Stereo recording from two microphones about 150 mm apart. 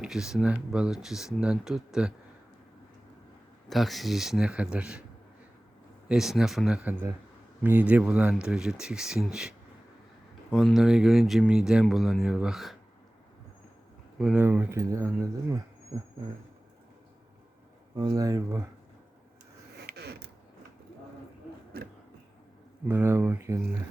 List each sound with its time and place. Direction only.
0.0 s speech: 5° right (ahead or behind)
3.7 s speech: centre (ahead or behind)
6.1 s speech: 5° right (ahead or behind)
14.2 s speech: 5° right (ahead or behind); by 16.1 s 25° right (ahead or behind)
17.9 s speech: 25° right (ahead or behind)
19.9 s mechanisms: 90° right
21.7 s a sound: 90° right
22.9 s speech: 15° right (ahead or behind)